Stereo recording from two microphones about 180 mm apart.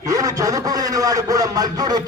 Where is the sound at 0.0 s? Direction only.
20° right (ahead or behind).